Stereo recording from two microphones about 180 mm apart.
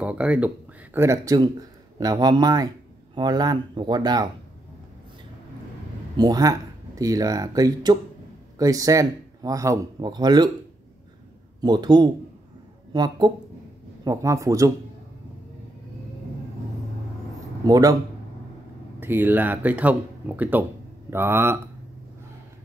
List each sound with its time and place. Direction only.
0.0 s a man's voice: 5° right (ahead or behind); by 4.3 s 20° right (ahead or behind)
6.1 s a man's voice: 20° right (ahead or behind)
11.6 s a man's voice: 25° right (ahead or behind)
17.6 s a man's voice: 20° right (ahead or behind)
18.9 s speech: 10° right (ahead or behind)